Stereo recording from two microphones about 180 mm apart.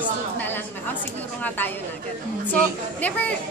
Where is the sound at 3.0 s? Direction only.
10° left (ahead or behind).